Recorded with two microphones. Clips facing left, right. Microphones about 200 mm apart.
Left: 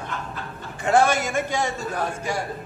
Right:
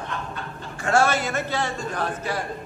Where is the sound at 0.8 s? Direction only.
15° left (ahead or behind).